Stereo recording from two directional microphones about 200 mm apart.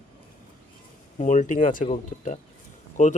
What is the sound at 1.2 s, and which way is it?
Speech, 35° left (ahead or behind).